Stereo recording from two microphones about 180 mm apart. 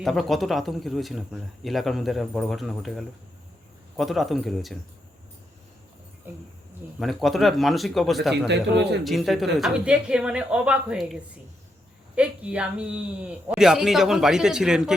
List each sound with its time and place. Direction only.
0.0 s speech: centre (ahead or behind)
7.0 s speech: centre (ahead or behind)
8.4 s speech: 70° right (ahead or behind)
9.0 s speech: centre (ahead or behind)